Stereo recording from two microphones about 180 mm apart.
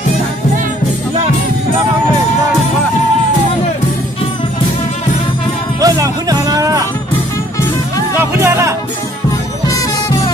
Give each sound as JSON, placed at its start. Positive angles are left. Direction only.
{"t": 5.8, "sound": "music", "side_deg": -20}
{"t": 8.2, "sound": "music", "side_deg": -15}
{"t": 9.7, "sound": "music", "side_deg": 20}